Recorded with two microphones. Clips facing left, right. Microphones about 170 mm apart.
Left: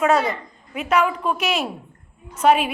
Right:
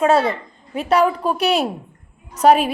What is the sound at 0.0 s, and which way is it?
A woman's voice, 30° right (ahead or behind).